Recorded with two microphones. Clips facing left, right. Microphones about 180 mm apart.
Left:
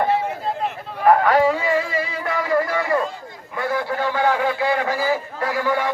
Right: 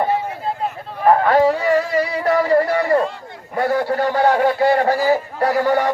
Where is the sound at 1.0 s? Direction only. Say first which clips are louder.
Right 1 dB; 20° right (ahead or behind).